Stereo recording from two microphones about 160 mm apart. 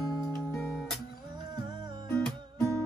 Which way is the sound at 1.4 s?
25° right (ahead or behind).